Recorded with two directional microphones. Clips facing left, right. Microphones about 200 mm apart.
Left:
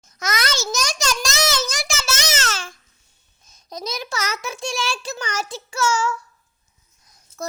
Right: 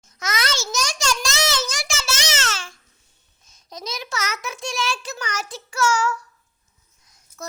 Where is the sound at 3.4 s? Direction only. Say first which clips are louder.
Left 3 dB; 40° left (ahead or behind).